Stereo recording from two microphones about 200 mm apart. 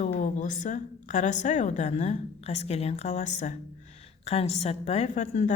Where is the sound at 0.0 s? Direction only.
35° left (ahead or behind).